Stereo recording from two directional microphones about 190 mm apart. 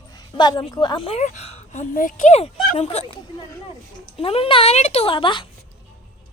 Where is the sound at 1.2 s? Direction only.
40° left (ahead or behind).